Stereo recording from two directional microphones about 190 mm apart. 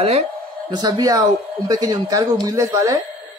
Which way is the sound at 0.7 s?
20° right (ahead or behind).